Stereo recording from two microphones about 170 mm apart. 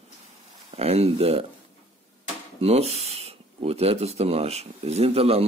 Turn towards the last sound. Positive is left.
turn(degrees=-35)  # may be behind; listen again after turning